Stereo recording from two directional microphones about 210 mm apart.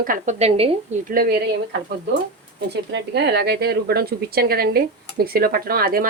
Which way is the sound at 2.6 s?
55° right (ahead or behind).